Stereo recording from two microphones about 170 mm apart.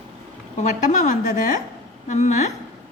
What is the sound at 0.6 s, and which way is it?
A woman's voice, 45° left (ahead or behind).